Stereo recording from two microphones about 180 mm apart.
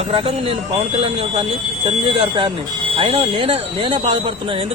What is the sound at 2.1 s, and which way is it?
A man's voice, 30° right (ahead or behind).